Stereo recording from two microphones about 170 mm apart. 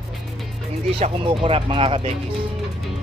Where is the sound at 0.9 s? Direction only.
35° right (ahead or behind).